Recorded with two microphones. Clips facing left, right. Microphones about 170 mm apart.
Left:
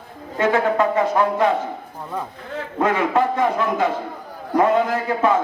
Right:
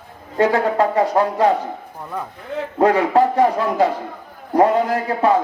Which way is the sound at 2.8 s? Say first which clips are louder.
Right 4 dB; 35° right (ahead or behind).